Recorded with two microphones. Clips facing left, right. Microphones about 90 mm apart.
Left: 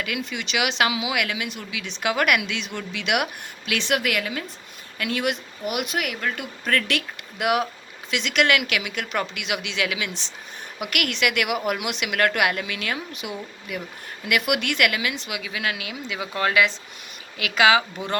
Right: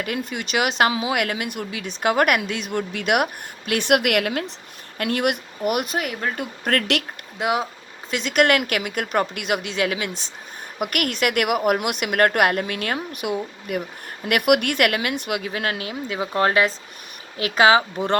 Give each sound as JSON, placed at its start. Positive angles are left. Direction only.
{"t": 0.0, "sound": "a woman's voice", "side_deg": -45}
{"t": 6.4, "sound": "speech", "side_deg": -55}
{"t": 7.3, "sound": "speech", "side_deg": -25}
{"t": 8.1, "sound": "speech", "side_deg": -45}